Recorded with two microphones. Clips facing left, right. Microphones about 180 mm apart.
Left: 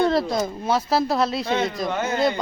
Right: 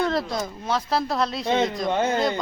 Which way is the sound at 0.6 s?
10° left (ahead or behind).